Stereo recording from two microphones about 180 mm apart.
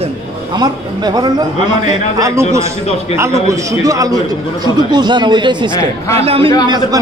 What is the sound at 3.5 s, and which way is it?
Speech, 20° right (ahead or behind).